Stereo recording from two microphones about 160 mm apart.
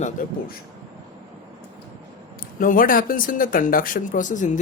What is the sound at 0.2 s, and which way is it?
Speech, 60° left (ahead or behind).